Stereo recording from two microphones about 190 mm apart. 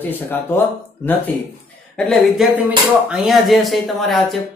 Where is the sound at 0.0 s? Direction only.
10° left (ahead or behind).